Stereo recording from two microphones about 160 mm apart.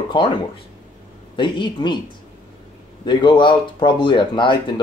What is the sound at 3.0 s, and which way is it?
Speech, 30° left (ahead or behind).